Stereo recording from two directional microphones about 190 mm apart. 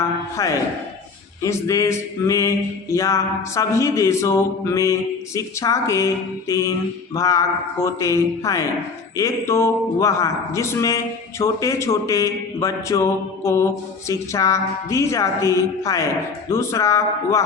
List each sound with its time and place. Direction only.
0.3 s a man's voice: 15° left (ahead or behind)